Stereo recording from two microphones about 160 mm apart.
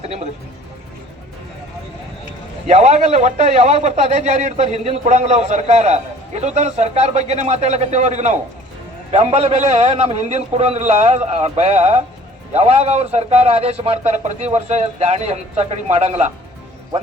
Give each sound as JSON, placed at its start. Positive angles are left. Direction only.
{"t": 0.0, "sound": "speech", "side_deg": -45}
{"t": 2.6, "sound": "a man's voice", "side_deg": -45}